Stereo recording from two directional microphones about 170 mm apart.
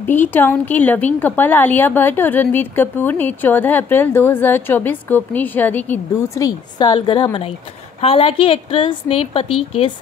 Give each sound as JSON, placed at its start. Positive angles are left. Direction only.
{"t": 0.0, "sound": "a woman's voice", "side_deg": 10}